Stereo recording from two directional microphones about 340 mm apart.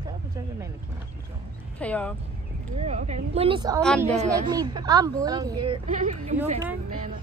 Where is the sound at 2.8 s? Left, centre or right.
Centre.